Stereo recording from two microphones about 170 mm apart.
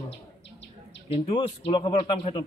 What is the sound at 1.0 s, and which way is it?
Speech, 35° left (ahead or behind).